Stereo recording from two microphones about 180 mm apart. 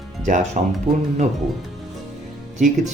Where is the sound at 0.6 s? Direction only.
40° right (ahead or behind).